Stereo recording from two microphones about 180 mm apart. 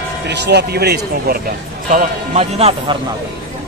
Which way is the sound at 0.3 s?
70° right (ahead or behind).